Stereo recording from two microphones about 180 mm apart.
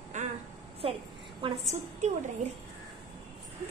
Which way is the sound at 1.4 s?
30° right (ahead or behind).